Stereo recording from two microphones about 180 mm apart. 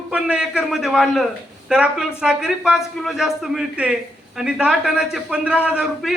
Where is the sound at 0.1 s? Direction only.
5° right (ahead or behind).